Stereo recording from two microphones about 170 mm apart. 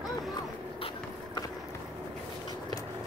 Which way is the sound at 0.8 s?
25° left (ahead or behind).